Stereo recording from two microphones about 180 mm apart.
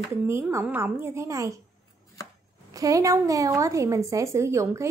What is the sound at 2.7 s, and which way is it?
A woman's voice, 20° right (ahead or behind).